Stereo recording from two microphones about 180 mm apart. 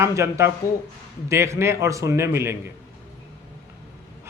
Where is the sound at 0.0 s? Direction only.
15° right (ahead or behind).